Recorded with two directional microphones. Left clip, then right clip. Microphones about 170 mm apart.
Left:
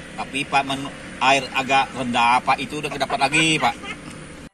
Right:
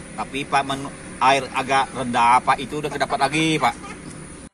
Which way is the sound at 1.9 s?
15° right (ahead or behind).